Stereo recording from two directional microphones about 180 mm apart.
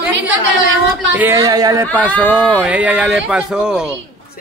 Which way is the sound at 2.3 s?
5° right (ahead or behind).